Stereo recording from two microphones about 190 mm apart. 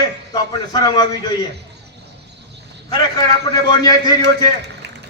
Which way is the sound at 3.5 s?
20° left (ahead or behind).